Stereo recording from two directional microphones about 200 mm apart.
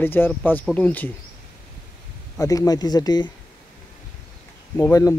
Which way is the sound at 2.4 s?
15° left (ahead or behind).